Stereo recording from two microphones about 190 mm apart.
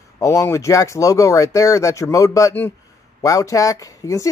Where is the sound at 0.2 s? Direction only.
15° left (ahead or behind).